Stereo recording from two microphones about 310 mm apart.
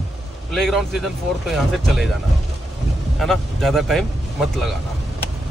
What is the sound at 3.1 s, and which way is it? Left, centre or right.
A man's voice, centre.